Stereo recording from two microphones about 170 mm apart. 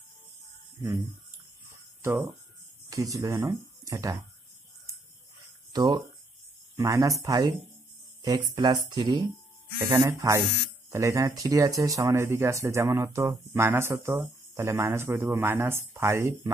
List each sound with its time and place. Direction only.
2.0 s speech: 15° right (ahead or behind)
5.7 s speech: 25° right (ahead or behind)